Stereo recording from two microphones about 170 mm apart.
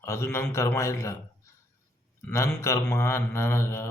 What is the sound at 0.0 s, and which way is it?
Speech, 15° left (ahead or behind).